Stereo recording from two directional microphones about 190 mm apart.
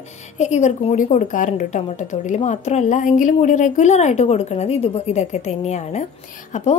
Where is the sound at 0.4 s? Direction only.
35° left (ahead or behind).